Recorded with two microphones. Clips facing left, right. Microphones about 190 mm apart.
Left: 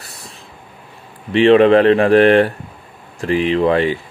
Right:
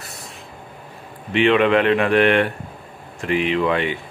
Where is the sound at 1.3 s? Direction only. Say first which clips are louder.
Left 6 dB; 35° left (ahead or behind).